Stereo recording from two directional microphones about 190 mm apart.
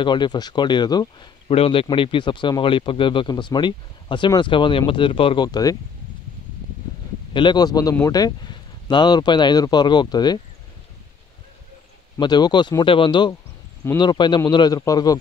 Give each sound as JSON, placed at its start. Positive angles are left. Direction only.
{"t": 0.0, "sound": "speech", "side_deg": 25}
{"t": 7.3, "sound": "speech", "side_deg": 25}
{"t": 12.2, "sound": "speech", "side_deg": 20}